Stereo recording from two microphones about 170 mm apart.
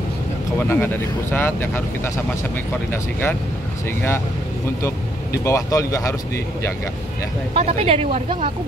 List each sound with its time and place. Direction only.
0.6 s speech: 10° left (ahead or behind)
2.9 s speech: 10° left (ahead or behind)
4.8 s speech: 15° left (ahead or behind)
7.5 s speech: 35° right (ahead or behind)